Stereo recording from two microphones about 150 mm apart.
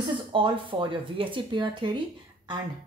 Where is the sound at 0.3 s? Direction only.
35° right (ahead or behind).